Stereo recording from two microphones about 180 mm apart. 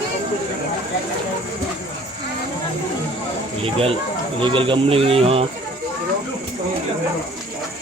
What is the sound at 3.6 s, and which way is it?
Speech, 30° right (ahead or behind).